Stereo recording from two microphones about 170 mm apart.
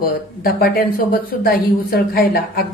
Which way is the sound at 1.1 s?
60° left (ahead or behind).